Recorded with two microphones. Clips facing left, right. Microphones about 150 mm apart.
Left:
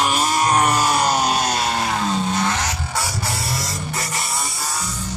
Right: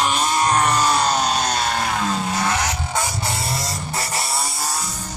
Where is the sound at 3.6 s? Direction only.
30° right (ahead or behind).